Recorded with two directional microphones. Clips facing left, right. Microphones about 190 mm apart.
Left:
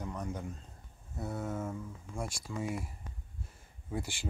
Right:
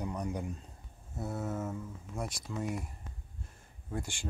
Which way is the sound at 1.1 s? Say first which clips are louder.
Right 1 dB; centre (ahead or behind).